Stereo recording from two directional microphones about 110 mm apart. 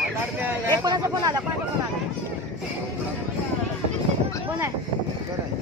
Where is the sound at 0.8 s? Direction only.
30° right (ahead or behind).